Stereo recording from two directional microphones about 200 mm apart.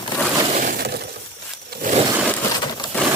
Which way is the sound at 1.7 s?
40° right (ahead or behind).